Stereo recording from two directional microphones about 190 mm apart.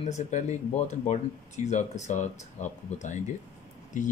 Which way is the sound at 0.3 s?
35° left (ahead or behind).